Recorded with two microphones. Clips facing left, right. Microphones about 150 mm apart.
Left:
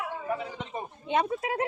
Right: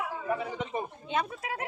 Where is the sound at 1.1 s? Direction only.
25° left (ahead or behind).